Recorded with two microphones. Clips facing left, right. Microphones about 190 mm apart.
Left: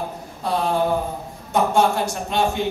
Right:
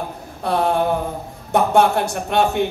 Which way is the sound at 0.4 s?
60° right (ahead or behind).